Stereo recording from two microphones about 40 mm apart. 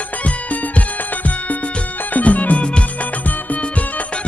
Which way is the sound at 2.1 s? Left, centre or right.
Left.